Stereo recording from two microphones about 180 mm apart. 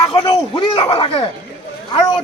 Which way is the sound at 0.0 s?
30° left (ahead or behind).